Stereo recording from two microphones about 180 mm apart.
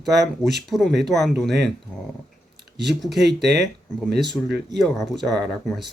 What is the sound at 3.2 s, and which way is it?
Speech, 70° right (ahead or behind).